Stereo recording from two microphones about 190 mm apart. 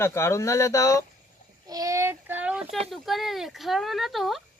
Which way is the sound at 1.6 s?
20° right (ahead or behind).